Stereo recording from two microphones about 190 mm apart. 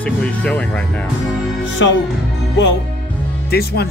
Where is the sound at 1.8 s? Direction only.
85° left.